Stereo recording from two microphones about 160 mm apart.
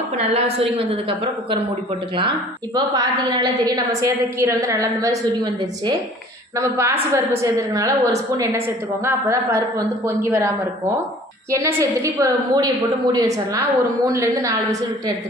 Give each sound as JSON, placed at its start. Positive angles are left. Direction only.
{"t": 0.2, "sound": "a woman's voice", "side_deg": -40}